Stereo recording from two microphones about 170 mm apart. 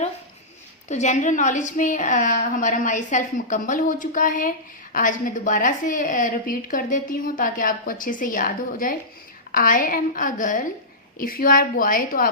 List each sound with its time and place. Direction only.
0.9 s a woman's voice: 45° left (ahead or behind)